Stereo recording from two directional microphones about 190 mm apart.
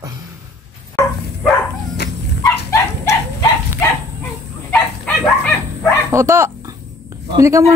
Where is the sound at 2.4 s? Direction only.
15° left (ahead or behind).